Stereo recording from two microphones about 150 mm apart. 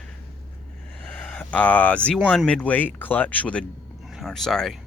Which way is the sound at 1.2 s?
10° left (ahead or behind).